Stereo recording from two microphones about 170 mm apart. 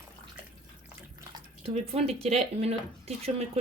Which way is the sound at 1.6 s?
35° right (ahead or behind).